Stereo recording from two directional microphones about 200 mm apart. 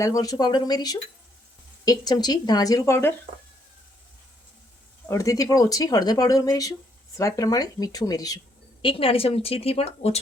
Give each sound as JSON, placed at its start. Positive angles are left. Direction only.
{"t": 0.0, "sound": "a woman's voice", "side_deg": 15}
{"t": 5.0, "sound": "a woman's voice", "side_deg": 15}